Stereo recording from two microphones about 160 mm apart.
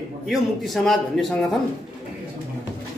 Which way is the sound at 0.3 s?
Centre (ahead or behind).